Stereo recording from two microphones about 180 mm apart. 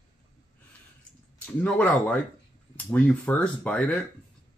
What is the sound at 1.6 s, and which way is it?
Speech, 5° left (ahead or behind).